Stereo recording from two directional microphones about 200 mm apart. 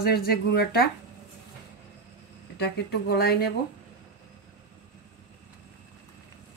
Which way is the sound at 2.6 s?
50° left (ahead or behind).